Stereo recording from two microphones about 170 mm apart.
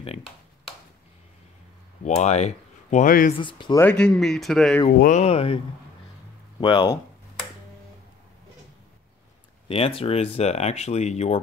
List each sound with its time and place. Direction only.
2.0 s speech: 40° left (ahead or behind)
3.3 s speech: 30° left (ahead or behind)
3.7 s speech: 10° left (ahead or behind)
5.0 s speech: 45° left (ahead or behind)
6.6 s speech: 25° left (ahead or behind)
9.7 s speech: 35° left (ahead or behind)